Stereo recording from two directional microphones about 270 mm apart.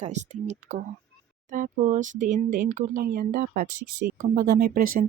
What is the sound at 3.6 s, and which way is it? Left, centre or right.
Speech, right.